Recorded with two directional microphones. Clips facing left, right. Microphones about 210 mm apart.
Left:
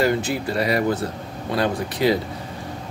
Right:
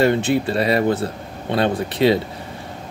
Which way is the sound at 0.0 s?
25° right (ahead or behind).